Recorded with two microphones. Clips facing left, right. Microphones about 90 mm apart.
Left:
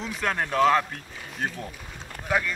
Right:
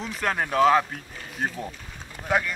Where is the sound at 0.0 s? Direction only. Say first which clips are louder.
Right 1 dB; centre (ahead or behind).